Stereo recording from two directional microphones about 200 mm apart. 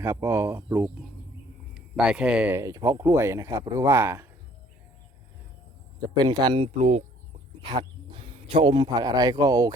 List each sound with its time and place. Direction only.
0.0 s speech: 15° right (ahead or behind)
6.1 s speech: 20° right (ahead or behind)
7.6 s speech: 25° right (ahead or behind)